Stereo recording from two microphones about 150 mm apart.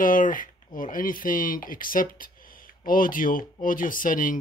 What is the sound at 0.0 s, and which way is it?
Speech, 65° left (ahead or behind).